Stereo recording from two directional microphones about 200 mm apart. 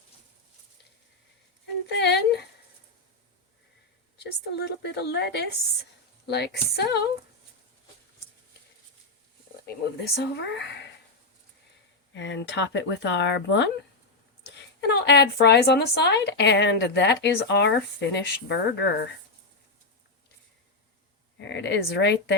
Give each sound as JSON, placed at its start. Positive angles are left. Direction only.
{"t": 2.0, "sound": "a sound", "side_deg": 55}
{"t": 4.2, "sound": "a woman's voice", "side_deg": 55}
{"t": 10.2, "sound": "a woman's voice", "side_deg": 60}
{"t": 12.1, "sound": "a woman's voice", "side_deg": 60}
{"t": 21.4, "sound": "speech", "side_deg": 60}